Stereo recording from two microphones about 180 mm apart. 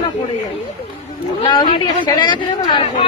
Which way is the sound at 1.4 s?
25° left (ahead or behind).